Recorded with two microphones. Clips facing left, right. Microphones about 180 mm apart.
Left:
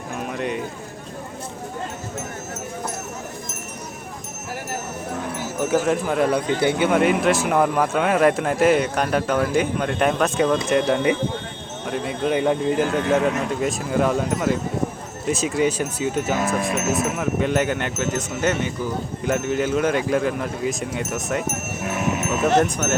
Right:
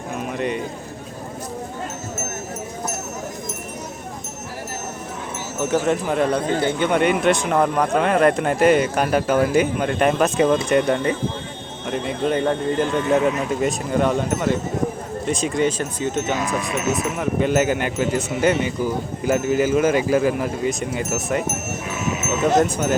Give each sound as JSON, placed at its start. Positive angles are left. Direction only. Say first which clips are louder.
{"t": 0.2, "sound": "clip-clop", "louder": "right 1 dB", "side_deg": 0}
{"t": 5.5, "sound": "a man's voice", "louder": "even", "side_deg": 5}
{"t": 17.2, "sound": "wind chime", "louder": "right 2 dB", "side_deg": -5}
{"t": 19.2, "sound": "a man's voice", "louder": "right 3 dB", "side_deg": -5}
{"t": 21.8, "sound": "livestock", "louder": "left 3 dB", "side_deg": 60}
{"t": 22.5, "sound": "wind chime", "louder": "right 2 dB", "side_deg": -10}